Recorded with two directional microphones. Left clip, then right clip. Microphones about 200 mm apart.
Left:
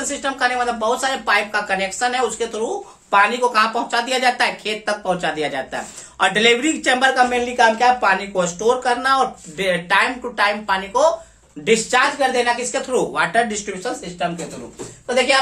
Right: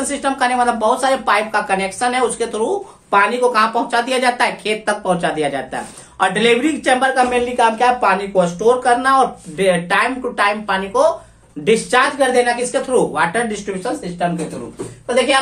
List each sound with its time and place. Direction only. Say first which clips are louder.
0.1 s a woman's voice: right 3 dB; 15° right (ahead or behind); by 5.5 s centre (ahead or behind)
5.5 s a woman's voice: right 2 dB; 20° left (ahead or behind); by 12.4 s centre (ahead or behind)
12.7 s speech: right 4 dB; 20° left (ahead or behind)